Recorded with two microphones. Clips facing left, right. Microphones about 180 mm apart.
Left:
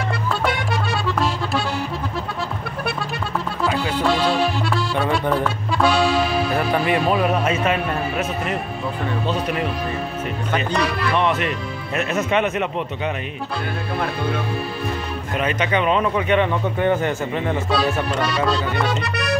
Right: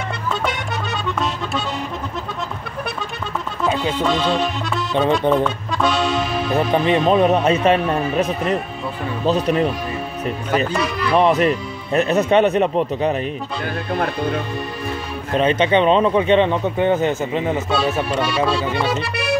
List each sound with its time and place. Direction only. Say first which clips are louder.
3.6 s music: right 3 dB; 20° right (ahead or behind)
3.9 s music: even; 5° left (ahead or behind)
5.3 s speech: right 3 dB; 5° left (ahead or behind)
6.5 s speech: right 7 dB; 20° right (ahead or behind)
11.1 s speech: right 8 dB; 35° right (ahead or behind)
15.3 s speech: right 6 dB; 25° right (ahead or behind)
18.1 s music: right 2 dB; centre (ahead or behind)